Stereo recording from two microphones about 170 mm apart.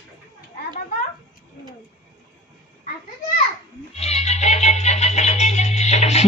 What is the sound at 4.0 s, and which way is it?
Music, 40° left (ahead or behind).